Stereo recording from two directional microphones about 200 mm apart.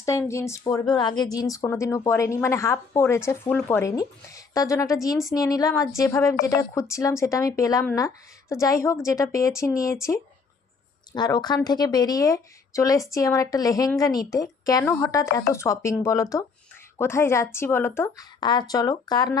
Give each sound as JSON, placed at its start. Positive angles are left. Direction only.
{"t": 0.0, "sound": "speech", "side_deg": 15}